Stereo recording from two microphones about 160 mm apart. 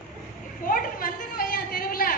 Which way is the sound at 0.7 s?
60° left (ahead or behind).